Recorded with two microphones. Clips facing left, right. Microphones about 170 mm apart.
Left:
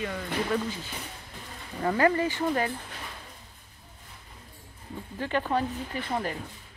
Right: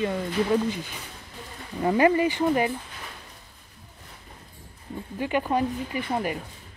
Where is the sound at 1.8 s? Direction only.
15° right (ahead or behind).